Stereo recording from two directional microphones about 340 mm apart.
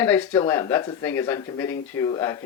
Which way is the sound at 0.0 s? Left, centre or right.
Centre.